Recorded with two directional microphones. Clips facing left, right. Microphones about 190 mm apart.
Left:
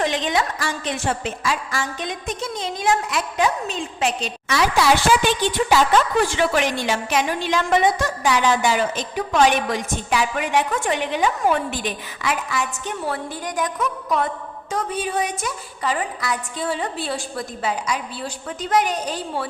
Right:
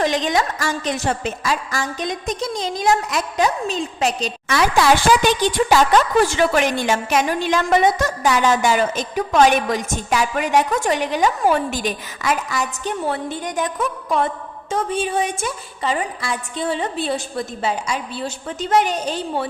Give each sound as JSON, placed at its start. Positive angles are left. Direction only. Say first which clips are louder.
{"t": 0.0, "sound": "a woman's voice", "louder": "right 2 dB", "side_deg": -40}
{"t": 13.1, "sound": "a woman's voice", "louder": "right 3 dB", "side_deg": -25}